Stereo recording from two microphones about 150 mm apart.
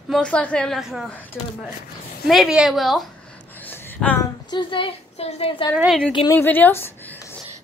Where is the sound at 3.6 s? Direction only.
10° left (ahead or behind).